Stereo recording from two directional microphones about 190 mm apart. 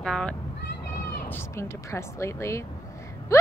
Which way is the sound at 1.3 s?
15° left (ahead or behind).